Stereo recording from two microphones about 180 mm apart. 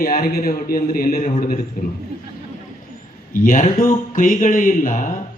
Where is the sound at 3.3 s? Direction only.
50° left (ahead or behind).